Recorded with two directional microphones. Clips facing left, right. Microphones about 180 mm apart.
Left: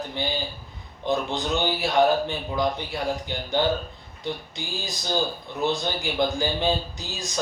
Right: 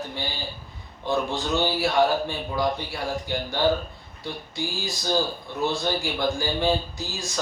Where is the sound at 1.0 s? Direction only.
20° left (ahead or behind).